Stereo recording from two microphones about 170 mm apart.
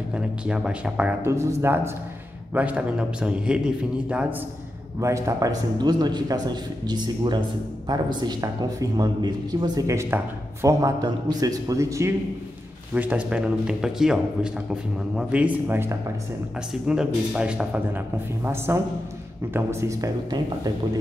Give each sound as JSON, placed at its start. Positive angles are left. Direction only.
{"t": 0.1, "sound": "a man's voice", "side_deg": -5}
{"t": 5.0, "sound": "a man's voice", "side_deg": -20}